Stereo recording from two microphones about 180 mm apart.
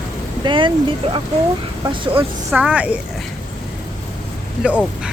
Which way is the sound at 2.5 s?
5° right (ahead or behind).